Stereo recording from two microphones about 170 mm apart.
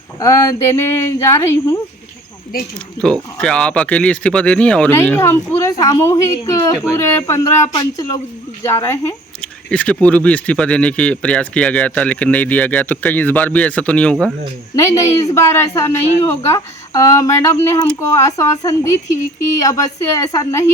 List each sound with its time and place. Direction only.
0.2 s speech: 15° left (ahead or behind)
3.0 s speech: 5° left (ahead or behind)
14.8 s speech: 15° left (ahead or behind)